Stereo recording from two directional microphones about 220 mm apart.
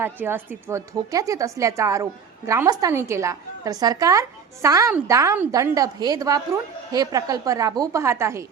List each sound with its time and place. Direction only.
0.0 s a woman's voice: 10° right (ahead or behind)